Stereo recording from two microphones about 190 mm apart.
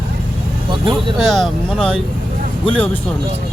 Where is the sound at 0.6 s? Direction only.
25° right (ahead or behind).